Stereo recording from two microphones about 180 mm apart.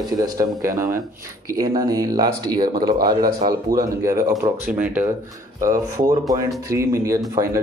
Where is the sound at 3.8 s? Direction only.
15° right (ahead or behind).